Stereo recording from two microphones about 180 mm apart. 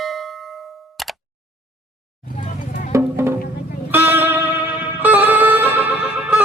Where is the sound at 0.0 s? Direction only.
Centre (ahead or behind).